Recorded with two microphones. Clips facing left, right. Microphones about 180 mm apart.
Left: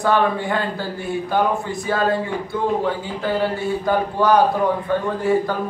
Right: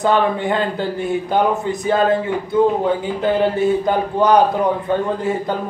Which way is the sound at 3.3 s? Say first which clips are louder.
Right 5 dB; 20° right (ahead or behind).